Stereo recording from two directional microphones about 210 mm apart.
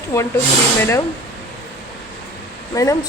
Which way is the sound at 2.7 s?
15° left (ahead or behind).